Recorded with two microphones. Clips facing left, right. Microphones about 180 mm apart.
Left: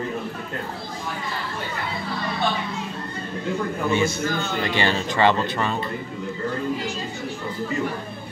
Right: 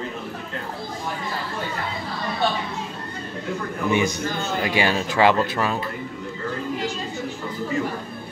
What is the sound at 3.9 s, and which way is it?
Speech, 15° right (ahead or behind).